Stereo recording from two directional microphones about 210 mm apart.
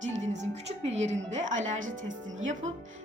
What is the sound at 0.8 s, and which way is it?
A woman's voice, 30° right (ahead or behind).